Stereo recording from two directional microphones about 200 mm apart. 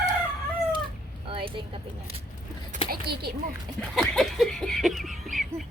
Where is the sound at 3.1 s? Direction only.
50° right (ahead or behind).